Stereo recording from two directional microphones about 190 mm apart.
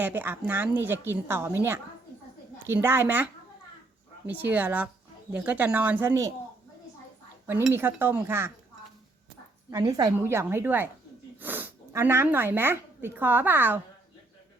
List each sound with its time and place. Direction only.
0.0 s a woman's voice: 10° right (ahead or behind)
4.3 s a woman's voice: 10° right (ahead or behind)
7.7 s a woman's voice: 10° right (ahead or behind)
9.6 s a woman's voice: 20° right (ahead or behind)